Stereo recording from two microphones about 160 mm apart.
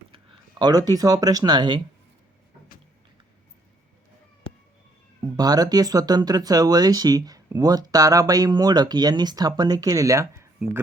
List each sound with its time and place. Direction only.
0.6 s speech: 25° right (ahead or behind)
5.2 s speech: 25° right (ahead or behind)